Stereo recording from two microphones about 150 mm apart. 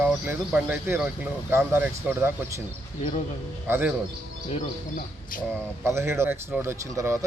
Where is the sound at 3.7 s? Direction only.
15° right (ahead or behind).